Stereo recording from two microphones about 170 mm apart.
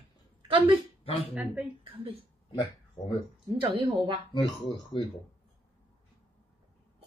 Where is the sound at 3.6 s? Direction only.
30° right (ahead or behind).